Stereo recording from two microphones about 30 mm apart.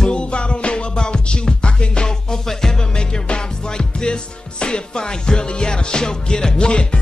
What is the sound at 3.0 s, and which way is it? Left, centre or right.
Music, left.